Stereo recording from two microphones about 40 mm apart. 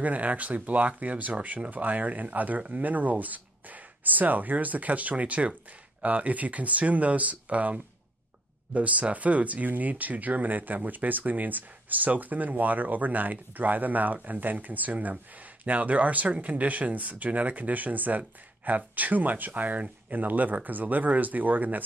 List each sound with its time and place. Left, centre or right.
0.0 s speech: right